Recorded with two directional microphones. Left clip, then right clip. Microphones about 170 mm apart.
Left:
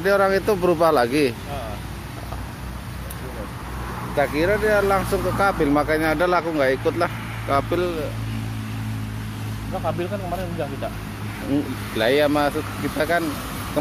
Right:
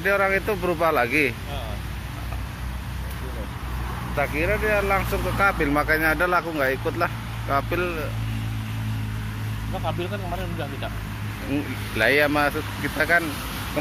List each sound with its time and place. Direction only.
0.0 s speech: 30° left (ahead or behind)
4.4 s speech: 20° left (ahead or behind)
12.0 s speech: 10° left (ahead or behind)